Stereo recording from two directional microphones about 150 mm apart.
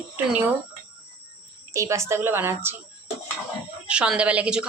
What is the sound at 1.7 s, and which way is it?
A woman's voice, 20° right (ahead or behind).